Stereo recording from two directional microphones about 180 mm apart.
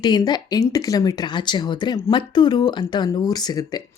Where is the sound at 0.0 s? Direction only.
25° left (ahead or behind).